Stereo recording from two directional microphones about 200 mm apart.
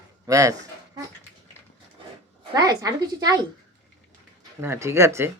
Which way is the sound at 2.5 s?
20° right (ahead or behind).